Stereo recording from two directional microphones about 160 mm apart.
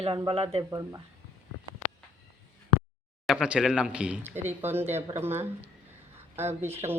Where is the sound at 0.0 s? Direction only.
30° right (ahead or behind).